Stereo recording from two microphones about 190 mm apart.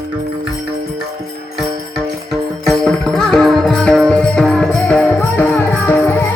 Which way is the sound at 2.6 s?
Centre (ahead or behind).